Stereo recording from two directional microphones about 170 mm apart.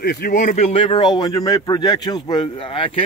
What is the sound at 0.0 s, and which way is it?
Speech, 65° left (ahead or behind).